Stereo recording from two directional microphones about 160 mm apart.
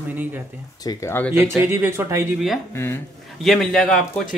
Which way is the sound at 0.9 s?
15° left (ahead or behind).